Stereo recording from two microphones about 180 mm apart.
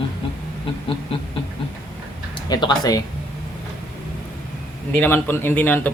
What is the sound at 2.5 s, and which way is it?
Speech, 25° left (ahead or behind).